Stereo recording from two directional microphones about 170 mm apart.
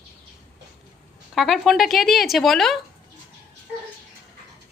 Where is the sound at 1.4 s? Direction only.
Centre (ahead or behind).